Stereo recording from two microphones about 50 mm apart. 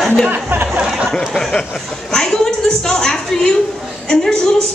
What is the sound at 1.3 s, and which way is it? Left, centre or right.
A woman's voice, centre.